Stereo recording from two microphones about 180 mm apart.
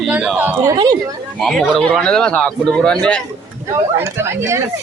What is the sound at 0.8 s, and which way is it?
Speech, 20° right (ahead or behind).